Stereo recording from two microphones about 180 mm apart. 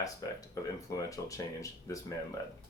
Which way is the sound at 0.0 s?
20° left (ahead or behind).